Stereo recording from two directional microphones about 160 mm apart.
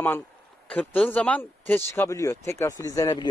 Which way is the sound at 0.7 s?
5° left (ahead or behind).